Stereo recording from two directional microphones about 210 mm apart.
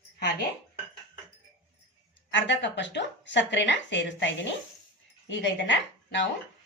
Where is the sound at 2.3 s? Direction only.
55° left (ahead or behind).